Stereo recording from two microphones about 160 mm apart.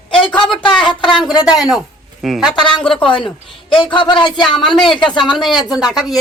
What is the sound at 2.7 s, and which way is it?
A woman's voice, 30° left (ahead or behind).